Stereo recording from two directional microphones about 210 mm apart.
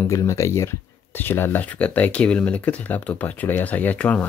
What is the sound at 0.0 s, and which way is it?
Speech, 15° left (ahead or behind).